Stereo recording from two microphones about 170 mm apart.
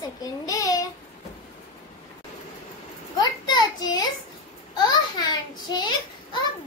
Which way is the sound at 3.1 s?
25° left (ahead or behind).